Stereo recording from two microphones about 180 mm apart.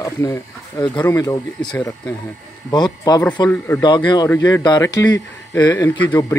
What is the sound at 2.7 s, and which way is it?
Speech, 25° left (ahead or behind).